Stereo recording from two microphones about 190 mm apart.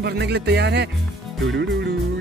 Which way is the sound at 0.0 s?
60° right (ahead or behind).